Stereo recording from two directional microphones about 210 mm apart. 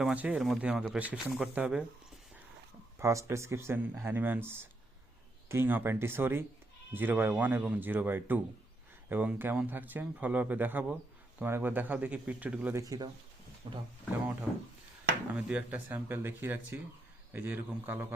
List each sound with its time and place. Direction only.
0.0 s speech: 5° right (ahead or behind)
3.0 s speech: 15° right (ahead or behind)
15.3 s speech: 5° right (ahead or behind)